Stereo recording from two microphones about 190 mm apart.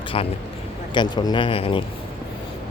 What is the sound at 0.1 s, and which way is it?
Speech, 30° left (ahead or behind).